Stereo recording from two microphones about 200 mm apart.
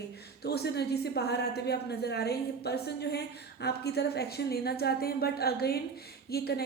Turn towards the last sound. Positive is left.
turn(degrees=50)  # may be behind; listen again after turning